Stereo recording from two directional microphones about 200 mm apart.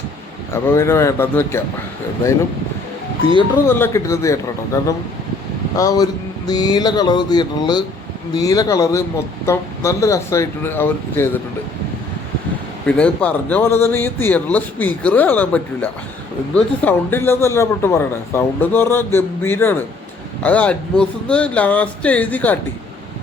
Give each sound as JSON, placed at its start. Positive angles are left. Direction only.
{"t": 0.5, "sound": "a man's voice", "side_deg": 15}
{"t": 3.7, "sound": "a man's voice", "side_deg": 10}
{"t": 12.8, "sound": "a man's voice", "side_deg": 5}